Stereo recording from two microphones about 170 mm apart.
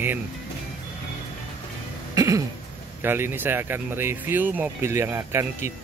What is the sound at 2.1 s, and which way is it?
Cough, 20° right (ahead or behind).